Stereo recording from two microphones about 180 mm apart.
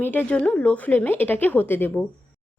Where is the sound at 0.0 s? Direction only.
10° left (ahead or behind).